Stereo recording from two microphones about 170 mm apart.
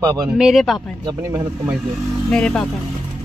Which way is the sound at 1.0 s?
20° right (ahead or behind).